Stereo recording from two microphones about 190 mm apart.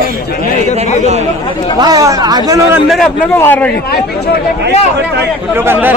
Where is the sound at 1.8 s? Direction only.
20° right (ahead or behind).